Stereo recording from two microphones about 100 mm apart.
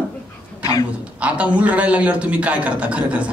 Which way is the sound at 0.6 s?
35° left (ahead or behind).